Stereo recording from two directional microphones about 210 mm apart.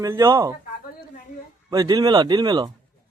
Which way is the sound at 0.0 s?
15° right (ahead or behind).